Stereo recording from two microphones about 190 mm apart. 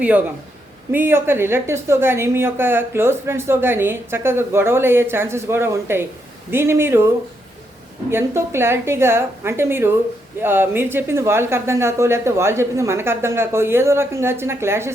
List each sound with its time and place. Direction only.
0.9 s a woman's voice: 10° right (ahead or behind)
8.1 s a woman's voice: 15° right (ahead or behind)